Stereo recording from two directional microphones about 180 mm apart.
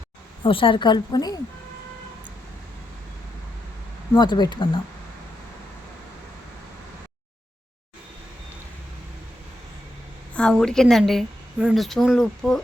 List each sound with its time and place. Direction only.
0.4 s a woman's voice: 30° left (ahead or behind)
4.1 s a woman's voice: 25° left (ahead or behind)
10.3 s a woman's voice: 5° left (ahead or behind)